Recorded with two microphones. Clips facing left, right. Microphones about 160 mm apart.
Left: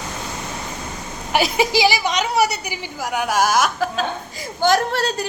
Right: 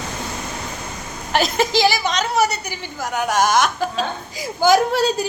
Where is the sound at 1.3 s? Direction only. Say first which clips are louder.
Even; 10° left (ahead or behind).